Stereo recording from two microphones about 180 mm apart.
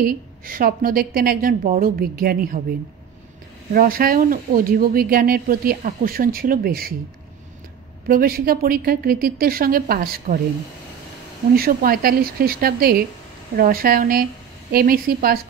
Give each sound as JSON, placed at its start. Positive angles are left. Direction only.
{"t": 0.0, "sound": "speech", "side_deg": -50}
{"t": 3.7, "sound": "speech", "side_deg": -55}
{"t": 8.1, "sound": "a woman's voice", "side_deg": -55}
{"t": 11.5, "sound": "a woman's voice", "side_deg": -55}